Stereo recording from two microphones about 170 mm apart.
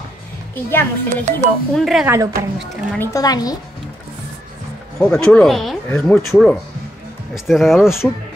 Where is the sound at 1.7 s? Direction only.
Centre (ahead or behind).